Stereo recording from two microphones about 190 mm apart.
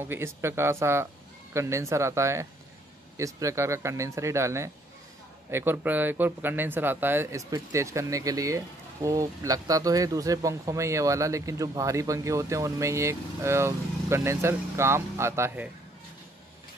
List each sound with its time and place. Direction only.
0.0 s a man's voice: 15° right (ahead or behind)